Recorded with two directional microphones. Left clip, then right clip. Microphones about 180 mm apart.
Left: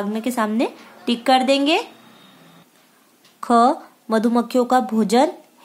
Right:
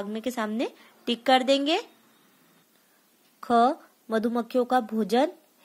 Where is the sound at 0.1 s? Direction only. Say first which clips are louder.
Left 7 dB; 30° right (ahead or behind).